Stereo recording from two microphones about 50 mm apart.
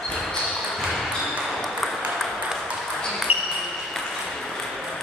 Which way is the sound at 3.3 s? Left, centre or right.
Right.